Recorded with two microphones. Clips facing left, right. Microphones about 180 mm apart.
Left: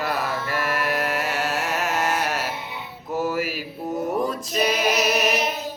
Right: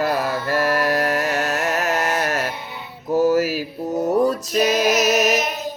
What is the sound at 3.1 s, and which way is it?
Mantra, 40° right (ahead or behind).